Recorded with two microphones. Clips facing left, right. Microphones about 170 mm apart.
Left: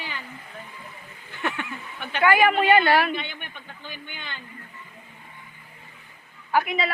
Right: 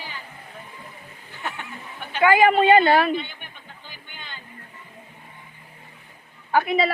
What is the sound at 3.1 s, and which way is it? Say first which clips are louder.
Speech: right 4 dB; 70° left (ahead or behind).